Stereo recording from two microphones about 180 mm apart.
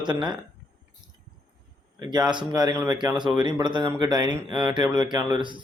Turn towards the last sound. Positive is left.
turn(degrees=-25)  # may be behind; listen again after turning